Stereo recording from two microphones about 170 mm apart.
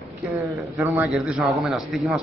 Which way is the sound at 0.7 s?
15° right (ahead or behind).